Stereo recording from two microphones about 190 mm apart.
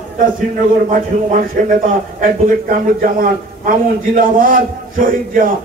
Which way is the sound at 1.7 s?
45° right (ahead or behind).